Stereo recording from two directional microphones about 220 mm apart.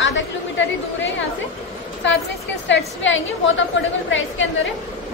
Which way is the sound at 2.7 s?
55° left (ahead or behind).